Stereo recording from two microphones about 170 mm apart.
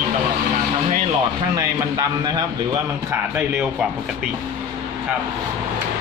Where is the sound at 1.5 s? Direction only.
20° right (ahead or behind).